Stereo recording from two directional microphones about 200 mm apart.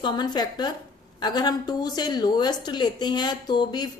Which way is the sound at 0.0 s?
20° left (ahead or behind).